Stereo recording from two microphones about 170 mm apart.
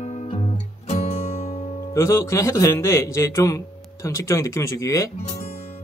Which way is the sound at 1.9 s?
15° left (ahead or behind).